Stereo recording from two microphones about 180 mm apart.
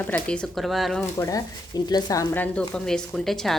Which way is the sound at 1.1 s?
20° left (ahead or behind).